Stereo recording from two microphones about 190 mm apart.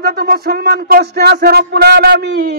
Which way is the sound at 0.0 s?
55° right (ahead or behind).